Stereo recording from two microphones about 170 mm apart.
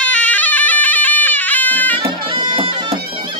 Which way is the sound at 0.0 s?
10° left (ahead or behind).